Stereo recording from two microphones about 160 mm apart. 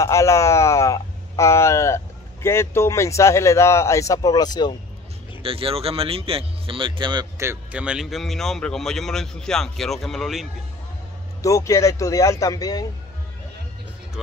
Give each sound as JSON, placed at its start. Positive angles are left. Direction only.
{"t": 0.0, "sound": "speech", "side_deg": 20}
{"t": 5.4, "sound": "speech", "side_deg": -35}
{"t": 7.3, "sound": "speech", "side_deg": -10}
{"t": 11.4, "sound": "speech", "side_deg": 20}